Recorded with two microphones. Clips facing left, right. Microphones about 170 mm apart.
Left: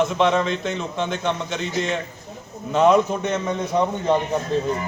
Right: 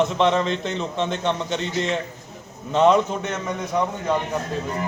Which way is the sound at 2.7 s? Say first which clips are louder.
Left 1 dB; 10° left (ahead or behind).